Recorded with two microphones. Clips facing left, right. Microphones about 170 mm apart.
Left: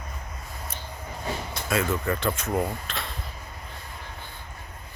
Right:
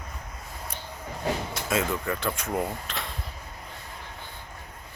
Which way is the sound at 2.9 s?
15° right (ahead or behind).